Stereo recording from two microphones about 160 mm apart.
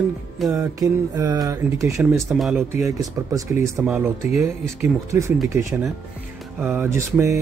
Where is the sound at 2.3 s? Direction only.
Centre (ahead or behind).